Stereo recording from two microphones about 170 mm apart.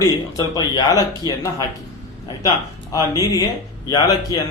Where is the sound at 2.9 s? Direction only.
20° left (ahead or behind).